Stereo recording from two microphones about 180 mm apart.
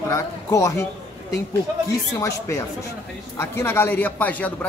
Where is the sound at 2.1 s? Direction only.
15° left (ahead or behind).